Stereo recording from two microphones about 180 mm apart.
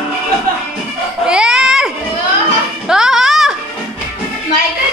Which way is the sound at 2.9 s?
5° right (ahead or behind).